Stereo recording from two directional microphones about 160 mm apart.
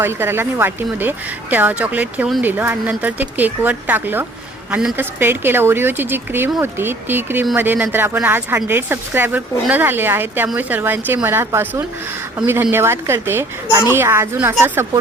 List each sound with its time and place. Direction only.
0.0 s speech: 15° right (ahead or behind)